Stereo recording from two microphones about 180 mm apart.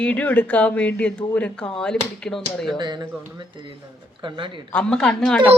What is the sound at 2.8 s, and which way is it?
Speech, 25° right (ahead or behind).